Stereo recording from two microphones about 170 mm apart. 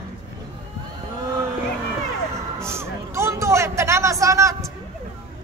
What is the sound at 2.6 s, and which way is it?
Hubbub, 15° right (ahead or behind).